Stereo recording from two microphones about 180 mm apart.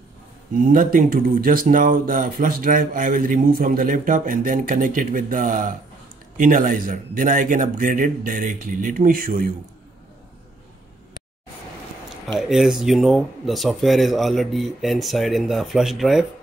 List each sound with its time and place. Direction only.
0.7 s speech: 50° right (ahead or behind)
12.4 s speech: centre (ahead or behind)